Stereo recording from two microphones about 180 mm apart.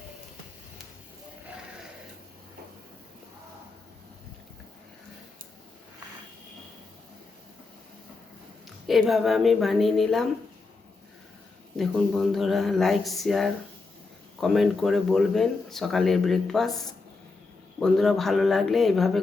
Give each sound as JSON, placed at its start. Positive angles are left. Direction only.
{"t": 8.9, "sound": "speech", "side_deg": 0}
{"t": 11.8, "sound": "speech", "side_deg": 0}